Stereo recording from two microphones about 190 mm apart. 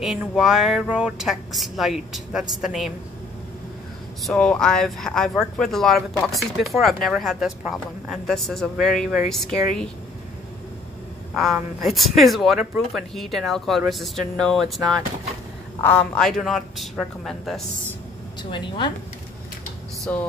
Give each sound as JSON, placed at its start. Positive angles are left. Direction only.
{"t": 0.0, "sound": "speech", "side_deg": 0}
{"t": 4.2, "sound": "speech", "side_deg": 5}
{"t": 11.3, "sound": "speech", "side_deg": 0}
{"t": 15.8, "sound": "speech", "side_deg": 5}
{"t": 18.4, "sound": "speech", "side_deg": 25}
{"t": 20.1, "sound": "a sound", "side_deg": 10}